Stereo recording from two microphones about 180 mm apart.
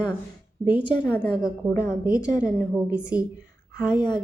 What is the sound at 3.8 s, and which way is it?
Speech, 25° left (ahead or behind).